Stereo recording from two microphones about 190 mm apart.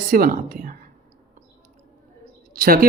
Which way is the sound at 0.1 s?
45° right (ahead or behind).